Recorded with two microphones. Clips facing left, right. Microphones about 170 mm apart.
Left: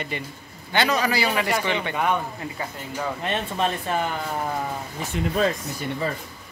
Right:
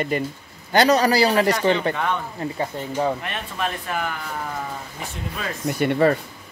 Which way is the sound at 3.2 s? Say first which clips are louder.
Left 3 dB; 25° left (ahead or behind).